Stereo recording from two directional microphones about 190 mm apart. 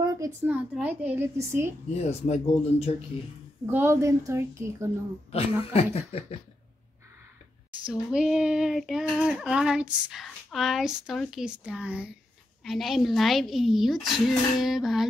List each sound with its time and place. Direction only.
0.0 s speech: 20° right (ahead or behind)
2.0 s speech: 35° left (ahead or behind)
3.6 s speech: 15° right (ahead or behind)
5.3 s speech: 30° left (ahead or behind)
7.8 s child singing: 5° right (ahead or behind)